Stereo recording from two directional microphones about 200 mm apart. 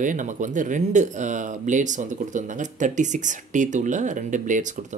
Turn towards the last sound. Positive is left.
turn(degrees=-40)  # may be behind; listen again after turning